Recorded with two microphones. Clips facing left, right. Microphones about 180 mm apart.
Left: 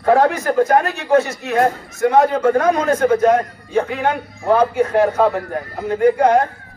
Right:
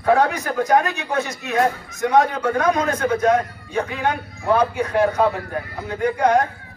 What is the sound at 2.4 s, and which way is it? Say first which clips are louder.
Speech: left 6 dB; 50° left (ahead or behind).